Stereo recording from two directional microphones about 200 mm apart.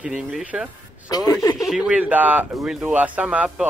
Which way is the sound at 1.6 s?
5° right (ahead or behind).